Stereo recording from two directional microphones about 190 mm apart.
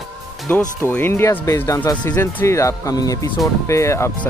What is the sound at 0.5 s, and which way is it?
Speech, 10° left (ahead or behind).